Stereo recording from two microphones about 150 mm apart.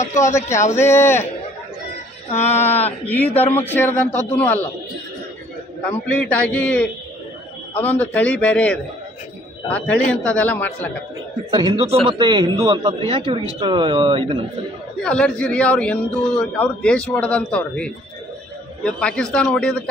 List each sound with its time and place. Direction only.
0.0 s a man's voice: 20° left (ahead or behind)
2.5 s a man's voice: 15° left (ahead or behind)
6.1 s a man's voice: 10° left (ahead or behind)
11.5 s a man's voice: 35° right (ahead or behind)
15.0 s a man's voice: 5° left (ahead or behind)